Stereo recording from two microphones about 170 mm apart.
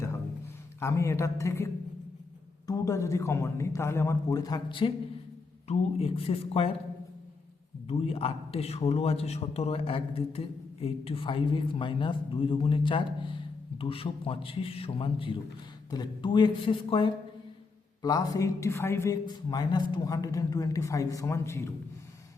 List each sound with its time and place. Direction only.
0.8 s a man's voice: 15° left (ahead or behind); by 6.7 s 35° left (ahead or behind)
7.9 s a man's voice: 35° left (ahead or behind); by 21.7 s 15° left (ahead or behind)